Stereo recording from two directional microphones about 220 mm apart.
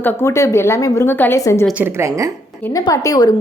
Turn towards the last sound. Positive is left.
turn(degrees=15)  # may be behind; listen again after turning